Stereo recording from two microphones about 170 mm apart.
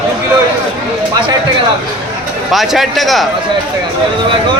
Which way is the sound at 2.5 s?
Centre (ahead or behind).